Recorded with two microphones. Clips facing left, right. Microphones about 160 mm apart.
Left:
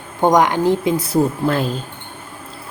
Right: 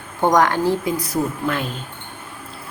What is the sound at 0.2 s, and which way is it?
A woman's voice, 15° left (ahead or behind).